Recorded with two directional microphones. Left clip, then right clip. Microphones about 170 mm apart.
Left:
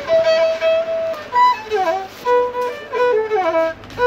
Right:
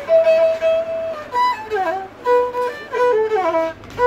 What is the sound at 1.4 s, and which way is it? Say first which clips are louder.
Music: left 4 dB; 45° right (ahead or behind).